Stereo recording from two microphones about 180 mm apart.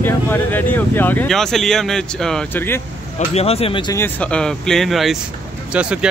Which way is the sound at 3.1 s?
35° left (ahead or behind).